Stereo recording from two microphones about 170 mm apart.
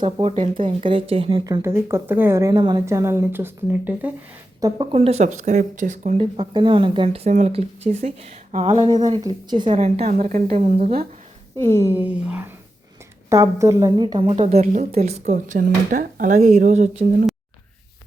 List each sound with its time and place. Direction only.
0.0 s speech: 35° right (ahead or behind)
1.6 s speech: 15° right (ahead or behind)
4.6 s speech: 30° right (ahead or behind)
8.9 s speech: 25° right (ahead or behind)
9.7 s speech: 40° right (ahead or behind)
11.5 s speech: 15° left (ahead or behind)
11.8 s speech: 10° right (ahead or behind); by 15.2 s 40° right (ahead or behind)
15.2 s speech: 55° right (ahead or behind)